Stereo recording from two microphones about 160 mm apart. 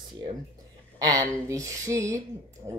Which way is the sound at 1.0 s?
20° right (ahead or behind).